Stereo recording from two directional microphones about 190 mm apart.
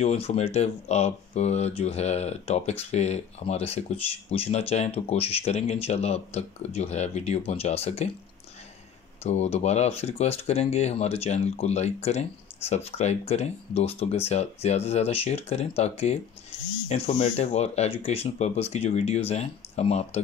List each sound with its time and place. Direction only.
0.0 s speech: 35° left (ahead or behind)
9.2 s speech: 35° left (ahead or behind)